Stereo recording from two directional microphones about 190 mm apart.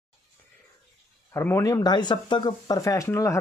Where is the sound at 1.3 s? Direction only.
15° left (ahead or behind).